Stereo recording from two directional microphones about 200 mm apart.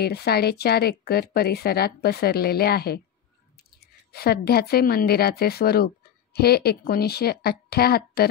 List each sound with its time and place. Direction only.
0.0 s speech: 50° left (ahead or behind)